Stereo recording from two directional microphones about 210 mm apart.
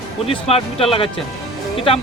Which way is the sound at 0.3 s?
25° left (ahead or behind).